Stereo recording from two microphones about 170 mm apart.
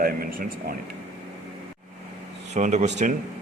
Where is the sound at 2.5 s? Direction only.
45° right (ahead or behind).